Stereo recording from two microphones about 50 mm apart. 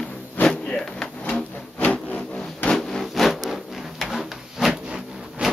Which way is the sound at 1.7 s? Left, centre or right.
Left.